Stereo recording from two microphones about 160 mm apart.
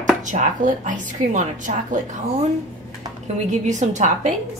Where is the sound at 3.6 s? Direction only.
50° right (ahead or behind).